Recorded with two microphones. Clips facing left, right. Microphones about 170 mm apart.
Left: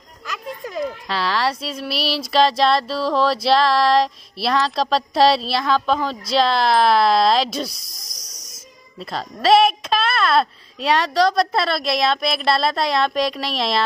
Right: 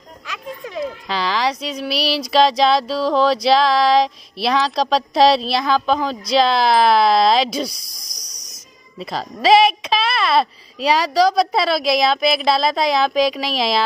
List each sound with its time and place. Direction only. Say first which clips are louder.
0.7 s speech: even; centre (ahead or behind)
8.2 s hiss: even; 25° left (ahead or behind)
9.0 s speech: right 2 dB; centre (ahead or behind)